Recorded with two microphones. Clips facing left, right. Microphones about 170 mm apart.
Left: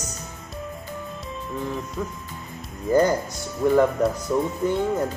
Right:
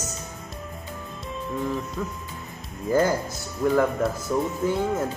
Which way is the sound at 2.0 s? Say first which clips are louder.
Left 1 dB; 10° left (ahead or behind).